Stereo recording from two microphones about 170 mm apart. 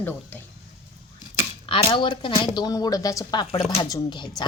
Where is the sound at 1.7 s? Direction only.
30° left (ahead or behind).